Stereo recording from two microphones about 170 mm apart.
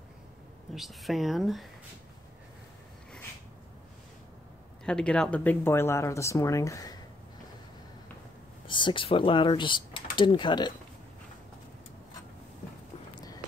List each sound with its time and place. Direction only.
0.7 s speech: centre (ahead or behind)
4.8 s speech: 5° left (ahead or behind)
8.6 s speech: 30° left (ahead or behind)